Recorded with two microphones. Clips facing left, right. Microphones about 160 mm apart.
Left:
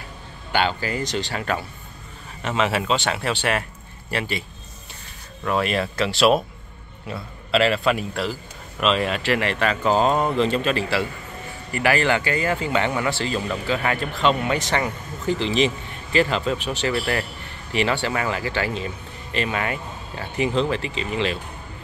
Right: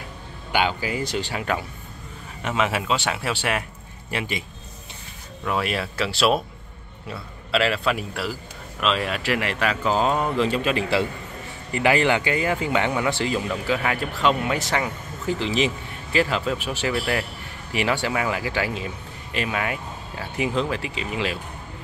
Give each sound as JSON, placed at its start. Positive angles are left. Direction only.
{"t": 0.5, "sound": "speech", "side_deg": -10}